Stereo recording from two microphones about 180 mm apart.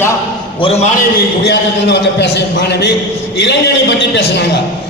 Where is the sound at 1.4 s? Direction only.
70° left (ahead or behind).